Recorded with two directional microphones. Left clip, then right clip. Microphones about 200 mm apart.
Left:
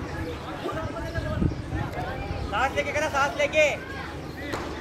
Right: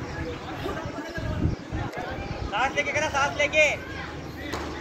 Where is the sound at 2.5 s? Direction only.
60° left (ahead or behind).